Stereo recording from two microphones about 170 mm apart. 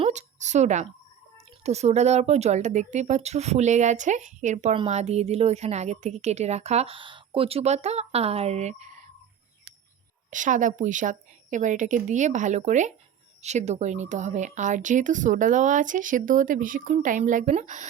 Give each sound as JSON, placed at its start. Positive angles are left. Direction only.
{"t": 0.0, "sound": "a sound", "side_deg": -45}
{"t": 1.6, "sound": "a woman's voice", "side_deg": -40}
{"t": 10.2, "sound": "speech", "side_deg": -50}